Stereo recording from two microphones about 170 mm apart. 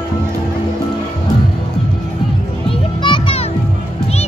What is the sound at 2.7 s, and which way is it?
Music, 30° left (ahead or behind).